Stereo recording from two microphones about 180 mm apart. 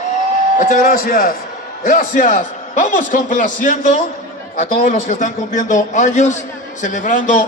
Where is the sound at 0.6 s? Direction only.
50° left (ahead or behind).